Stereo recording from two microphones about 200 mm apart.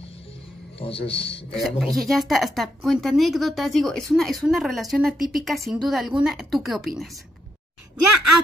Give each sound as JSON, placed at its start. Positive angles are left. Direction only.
{"t": 0.7, "sound": "a man's voice", "side_deg": 30}
{"t": 1.5, "sound": "speech", "side_deg": 0}